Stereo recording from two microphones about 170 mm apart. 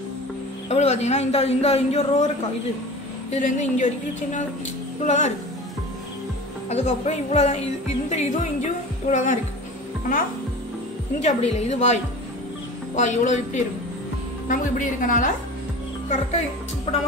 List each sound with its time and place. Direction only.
0.7 s a man's voice: 40° left (ahead or behind)
3.3 s a woman's voice: 45° left (ahead or behind)
6.7 s a man's voice: 40° left (ahead or behind)
11.1 s a woman's voice: 40° left (ahead or behind)
16.9 s a man's voice: 30° left (ahead or behind)